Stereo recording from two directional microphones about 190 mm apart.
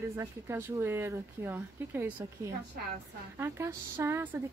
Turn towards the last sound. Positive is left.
turn(degrees=-10)  # may be behind; listen again after turning